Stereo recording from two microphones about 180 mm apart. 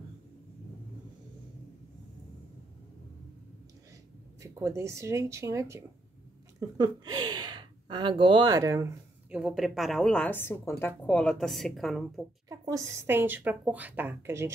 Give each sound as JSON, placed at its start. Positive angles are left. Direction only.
{"t": 4.4, "sound": "a woman's voice", "side_deg": -15}
{"t": 9.4, "sound": "a woman's voice", "side_deg": 0}
{"t": 12.4, "sound": "a woman's voice", "side_deg": -20}